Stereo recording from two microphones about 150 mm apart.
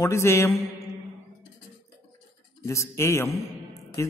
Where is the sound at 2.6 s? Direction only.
20° left (ahead or behind).